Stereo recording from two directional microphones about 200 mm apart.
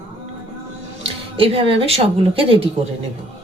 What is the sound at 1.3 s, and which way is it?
A woman's voice, 25° right (ahead or behind).